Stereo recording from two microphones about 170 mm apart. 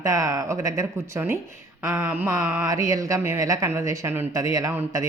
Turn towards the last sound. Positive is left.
turn(degrees=-20)  # may be behind; listen again after turning